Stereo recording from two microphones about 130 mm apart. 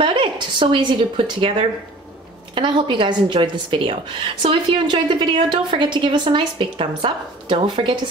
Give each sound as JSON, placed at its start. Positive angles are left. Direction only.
{"t": 0.0, "sound": "a woman's voice", "side_deg": -40}